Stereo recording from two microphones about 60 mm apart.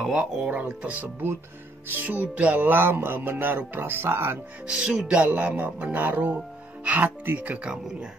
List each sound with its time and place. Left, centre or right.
0.0 s speech: centre
0.5 s speech: right
1.9 s music: right
4.6 s speech: centre